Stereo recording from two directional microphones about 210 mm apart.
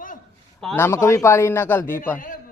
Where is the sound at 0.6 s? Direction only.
5° left (ahead or behind).